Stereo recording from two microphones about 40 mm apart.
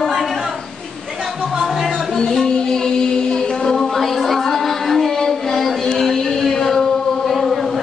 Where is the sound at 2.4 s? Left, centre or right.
Centre.